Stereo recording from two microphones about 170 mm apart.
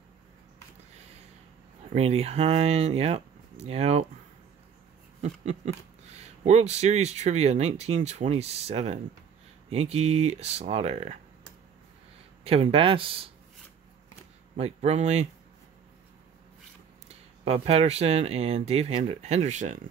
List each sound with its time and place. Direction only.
2.0 s speech: 35° right (ahead or behind)
5.2 s speech: 40° right (ahead or behind)
12.4 s speech: 35° right (ahead or behind)
14.6 s speech: 40° right (ahead or behind)
17.1 s speech: 35° right (ahead or behind)